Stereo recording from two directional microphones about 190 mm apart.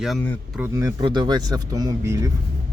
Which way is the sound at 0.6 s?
15° right (ahead or behind).